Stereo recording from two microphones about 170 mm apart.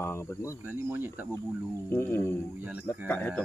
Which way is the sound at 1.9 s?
15° left (ahead or behind).